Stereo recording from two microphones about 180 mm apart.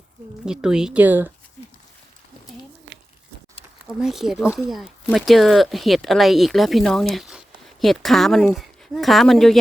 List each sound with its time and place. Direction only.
0.4 s speech: 5° right (ahead or behind)
2.9 s a sound: 75° right (ahead or behind)
4.0 s speech: centre (ahead or behind)